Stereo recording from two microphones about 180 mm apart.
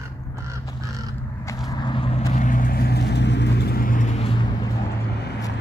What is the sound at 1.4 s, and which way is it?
Vehicle, 20° left (ahead or behind).